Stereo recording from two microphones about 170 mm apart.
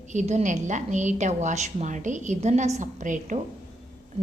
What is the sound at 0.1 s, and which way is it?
A woman's voice, 45° right (ahead or behind).